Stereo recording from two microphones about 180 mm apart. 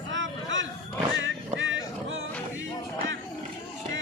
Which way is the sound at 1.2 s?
90° right.